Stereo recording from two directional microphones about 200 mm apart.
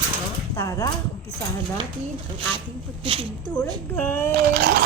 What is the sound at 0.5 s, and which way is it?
Speech, 15° left (ahead or behind).